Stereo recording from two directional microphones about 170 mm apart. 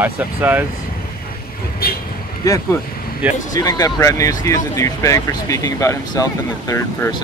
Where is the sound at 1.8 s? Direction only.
60° left (ahead or behind).